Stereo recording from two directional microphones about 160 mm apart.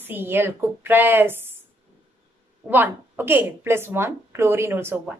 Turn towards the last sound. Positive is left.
turn(degrees=-15)  # may be behind; listen again after turning